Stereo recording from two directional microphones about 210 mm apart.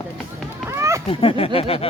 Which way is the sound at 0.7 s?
15° right (ahead or behind).